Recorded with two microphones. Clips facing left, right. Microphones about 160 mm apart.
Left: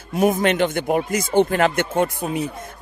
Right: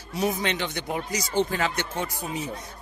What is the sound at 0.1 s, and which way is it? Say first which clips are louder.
A man's voice: left 8 dB; 50° left (ahead or behind).